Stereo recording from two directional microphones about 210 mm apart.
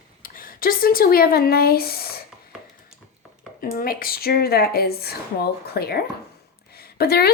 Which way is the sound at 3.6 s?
45° left (ahead or behind).